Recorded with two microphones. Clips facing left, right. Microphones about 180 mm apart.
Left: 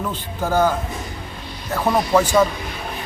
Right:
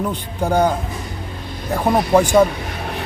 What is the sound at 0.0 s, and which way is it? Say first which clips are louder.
A man's voice: right 3 dB; 15° right (ahead or behind).